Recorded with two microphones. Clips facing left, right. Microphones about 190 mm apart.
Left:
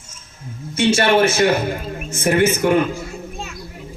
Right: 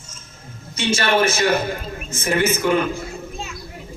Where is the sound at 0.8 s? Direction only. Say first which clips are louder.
Left 4 dB; 65° left (ahead or behind).